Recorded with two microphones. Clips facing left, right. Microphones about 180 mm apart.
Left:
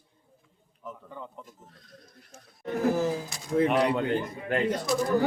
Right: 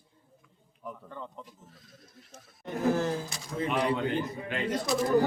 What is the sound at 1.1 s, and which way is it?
Speech, 5° left (ahead or behind).